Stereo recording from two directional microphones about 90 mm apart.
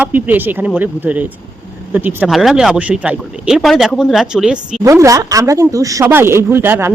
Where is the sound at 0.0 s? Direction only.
20° right (ahead or behind).